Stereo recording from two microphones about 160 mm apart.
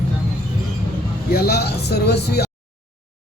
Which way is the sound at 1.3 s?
75° left (ahead or behind).